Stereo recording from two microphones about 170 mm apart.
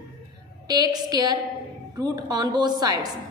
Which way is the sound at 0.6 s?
20° right (ahead or behind).